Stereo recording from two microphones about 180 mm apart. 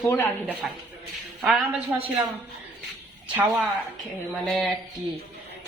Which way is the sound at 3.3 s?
10° right (ahead or behind).